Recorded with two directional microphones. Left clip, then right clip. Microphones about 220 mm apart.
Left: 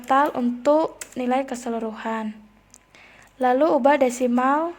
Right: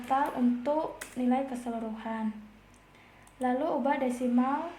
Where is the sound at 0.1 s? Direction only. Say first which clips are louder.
Left 8 dB; 45° left (ahead or behind).